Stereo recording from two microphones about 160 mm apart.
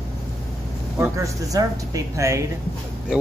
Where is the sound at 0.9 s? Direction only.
15° right (ahead or behind).